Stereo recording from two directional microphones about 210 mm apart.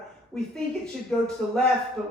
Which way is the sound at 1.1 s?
5° left (ahead or behind).